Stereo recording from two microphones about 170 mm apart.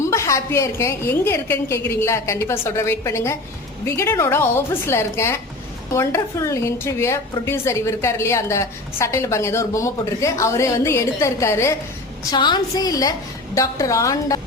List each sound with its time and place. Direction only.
0.0 s a woman's voice: 15° left (ahead or behind)